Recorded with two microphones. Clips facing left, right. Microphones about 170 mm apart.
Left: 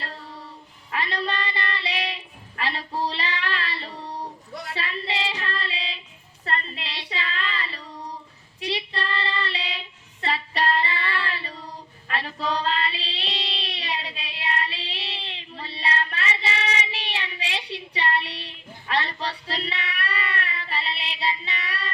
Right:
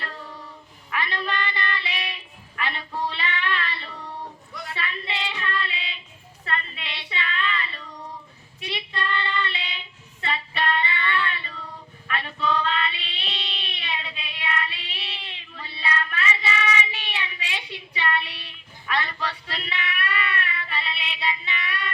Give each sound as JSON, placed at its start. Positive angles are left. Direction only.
{"t": 0.0, "sound": "child singing", "side_deg": 35}
{"t": 6.4, "sound": "a sound", "side_deg": 35}
{"t": 8.6, "sound": "child singing", "side_deg": 35}